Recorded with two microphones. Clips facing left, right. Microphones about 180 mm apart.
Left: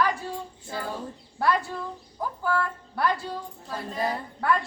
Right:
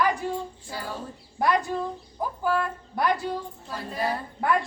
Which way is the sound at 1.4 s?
15° right (ahead or behind).